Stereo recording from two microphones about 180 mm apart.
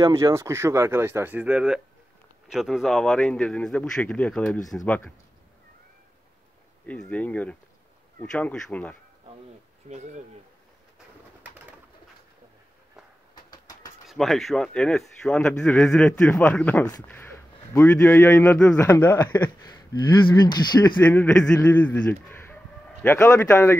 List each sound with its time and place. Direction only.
0.0 s speech: 15° right (ahead or behind); by 5.0 s 5° left (ahead or behind)
6.9 s a man's voice: 5° left (ahead or behind)
9.8 s speech: 40° right (ahead or behind)
13.5 s train: 20° left (ahead or behind)
14.0 s a man's voice: centre (ahead or behind)
19.6 s speech: 20° left (ahead or behind)
21.0 s a man's voice: 10° left (ahead or behind)